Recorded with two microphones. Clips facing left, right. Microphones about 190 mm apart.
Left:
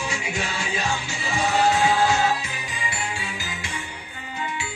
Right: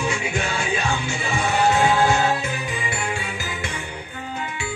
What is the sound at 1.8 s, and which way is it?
Music, 55° right (ahead or behind).